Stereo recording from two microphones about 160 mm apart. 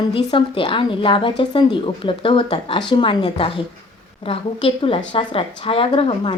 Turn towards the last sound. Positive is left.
turn(degrees=30)  # may be behind; listen again after turning